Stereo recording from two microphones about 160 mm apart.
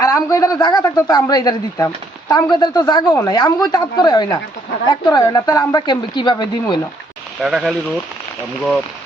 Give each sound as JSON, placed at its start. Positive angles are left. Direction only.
{"t": 0.0, "sound": "speech", "side_deg": 20}
{"t": 7.4, "sound": "speech", "side_deg": 0}